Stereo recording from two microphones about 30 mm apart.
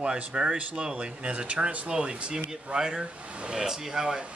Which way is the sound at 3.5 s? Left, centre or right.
Centre.